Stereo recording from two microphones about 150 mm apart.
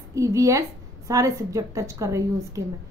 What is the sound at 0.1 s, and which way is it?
A woman's voice, 20° right (ahead or behind).